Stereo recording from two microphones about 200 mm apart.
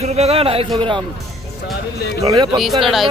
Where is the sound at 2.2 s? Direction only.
20° right (ahead or behind).